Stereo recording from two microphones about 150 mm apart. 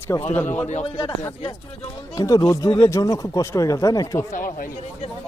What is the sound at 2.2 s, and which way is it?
Speech, 20° left (ahead or behind).